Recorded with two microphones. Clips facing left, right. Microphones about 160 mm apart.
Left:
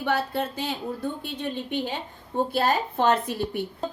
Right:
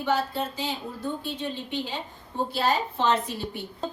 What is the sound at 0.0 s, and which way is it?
A woman's voice, 60° left (ahead or behind).